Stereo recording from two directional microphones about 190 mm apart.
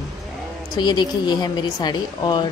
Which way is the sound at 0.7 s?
20° left (ahead or behind).